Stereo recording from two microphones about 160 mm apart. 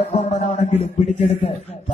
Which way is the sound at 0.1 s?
45° left (ahead or behind).